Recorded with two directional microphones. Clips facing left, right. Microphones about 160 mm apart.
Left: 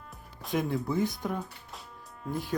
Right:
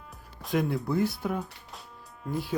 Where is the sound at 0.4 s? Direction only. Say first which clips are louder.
Right 2 dB; centre (ahead or behind).